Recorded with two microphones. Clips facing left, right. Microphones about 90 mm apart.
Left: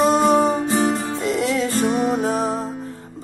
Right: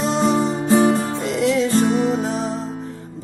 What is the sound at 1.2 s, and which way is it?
Music, 40° left (ahead or behind).